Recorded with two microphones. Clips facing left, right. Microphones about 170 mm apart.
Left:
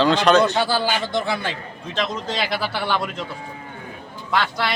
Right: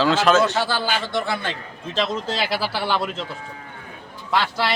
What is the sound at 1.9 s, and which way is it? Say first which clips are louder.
Speech: right 2 dB; 30° right (ahead or behind).